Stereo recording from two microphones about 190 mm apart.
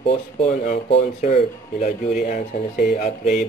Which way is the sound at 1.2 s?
40° left (ahead or behind).